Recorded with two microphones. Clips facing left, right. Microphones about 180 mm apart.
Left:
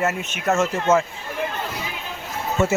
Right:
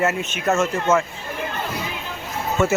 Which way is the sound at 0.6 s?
25° left (ahead or behind).